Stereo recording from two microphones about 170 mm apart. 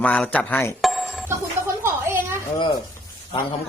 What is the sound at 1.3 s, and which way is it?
Music, 15° right (ahead or behind).